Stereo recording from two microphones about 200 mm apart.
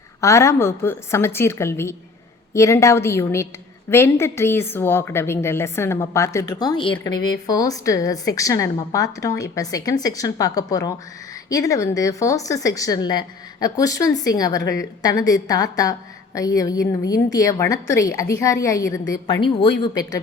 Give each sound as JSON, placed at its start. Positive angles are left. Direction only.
{"t": 0.2, "sound": "a woman's voice", "side_deg": 15}